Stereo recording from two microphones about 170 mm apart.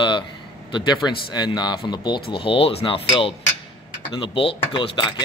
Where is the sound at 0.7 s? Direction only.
25° left (ahead or behind).